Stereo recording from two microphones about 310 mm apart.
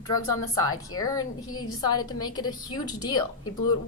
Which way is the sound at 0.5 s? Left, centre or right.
Centre.